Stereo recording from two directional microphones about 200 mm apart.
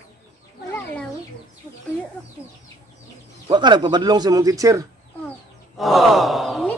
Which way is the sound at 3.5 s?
20° right (ahead or behind).